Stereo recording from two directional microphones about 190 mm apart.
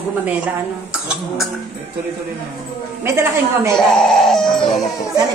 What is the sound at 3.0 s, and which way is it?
Speech, 15° right (ahead or behind).